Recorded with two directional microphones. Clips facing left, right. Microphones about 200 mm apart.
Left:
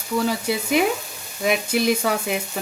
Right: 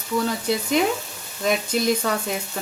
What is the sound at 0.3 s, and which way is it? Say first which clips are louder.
Speech: left 1 dB; 10° left (ahead or behind).